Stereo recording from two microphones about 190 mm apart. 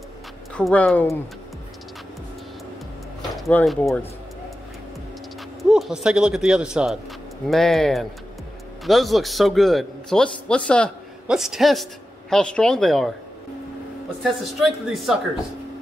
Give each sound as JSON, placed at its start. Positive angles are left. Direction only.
{"t": 0.6, "sound": "speech", "side_deg": 5}
{"t": 3.3, "sound": "speech", "side_deg": 0}
{"t": 5.6, "sound": "a man's voice", "side_deg": 0}
{"t": 14.2, "sound": "a man's voice", "side_deg": 0}